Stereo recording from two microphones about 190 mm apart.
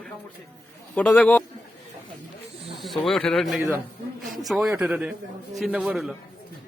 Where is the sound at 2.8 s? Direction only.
Centre (ahead or behind).